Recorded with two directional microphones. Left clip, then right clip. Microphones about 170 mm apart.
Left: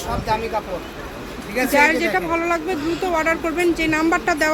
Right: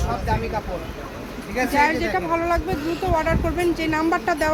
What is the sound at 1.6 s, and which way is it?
Speech, 15° left (ahead or behind).